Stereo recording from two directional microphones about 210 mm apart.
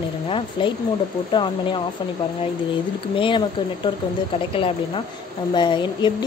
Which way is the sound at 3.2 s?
25° left (ahead or behind).